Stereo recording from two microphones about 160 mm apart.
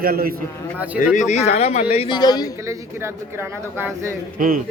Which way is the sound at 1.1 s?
45° left (ahead or behind).